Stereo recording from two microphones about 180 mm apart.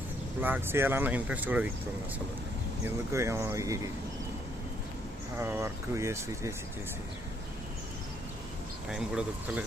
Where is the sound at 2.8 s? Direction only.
15° right (ahead or behind).